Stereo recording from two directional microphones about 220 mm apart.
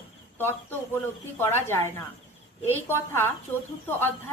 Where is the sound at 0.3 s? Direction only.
10° left (ahead or behind).